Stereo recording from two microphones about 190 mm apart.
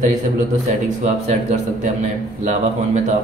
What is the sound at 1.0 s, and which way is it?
Speech, 35° right (ahead or behind).